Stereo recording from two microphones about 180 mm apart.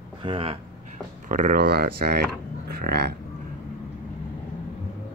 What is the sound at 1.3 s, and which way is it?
Speech, 50° right (ahead or behind).